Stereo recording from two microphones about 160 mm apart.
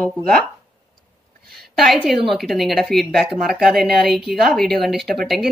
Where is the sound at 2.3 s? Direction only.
Centre (ahead or behind).